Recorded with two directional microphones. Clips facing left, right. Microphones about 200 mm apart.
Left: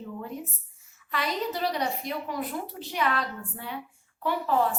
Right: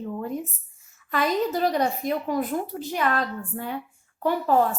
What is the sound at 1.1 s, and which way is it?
A woman's voice, 45° right (ahead or behind).